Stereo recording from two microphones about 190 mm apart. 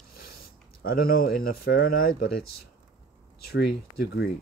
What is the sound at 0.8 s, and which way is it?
Speech, 50° left (ahead or behind).